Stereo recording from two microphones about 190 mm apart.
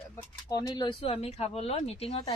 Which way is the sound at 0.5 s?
20° left (ahead or behind).